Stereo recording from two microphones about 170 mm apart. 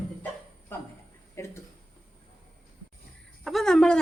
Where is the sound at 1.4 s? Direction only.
15° left (ahead or behind).